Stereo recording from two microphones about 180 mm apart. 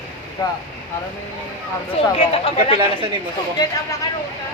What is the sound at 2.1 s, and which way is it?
Speech, 30° left (ahead or behind).